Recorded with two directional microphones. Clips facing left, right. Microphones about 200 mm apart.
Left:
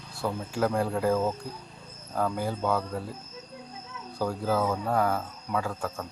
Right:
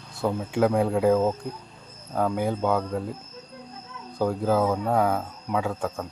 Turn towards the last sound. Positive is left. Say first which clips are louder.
# right 4 dB
turn(degrees=-20)  # may be behind; listen again after turning